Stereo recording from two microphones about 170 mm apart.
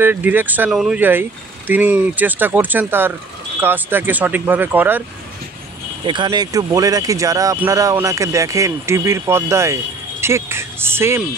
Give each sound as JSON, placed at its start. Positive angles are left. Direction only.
{"t": 0.0, "sound": "speech", "side_deg": -10}
{"t": 6.0, "sound": "speech", "side_deg": -25}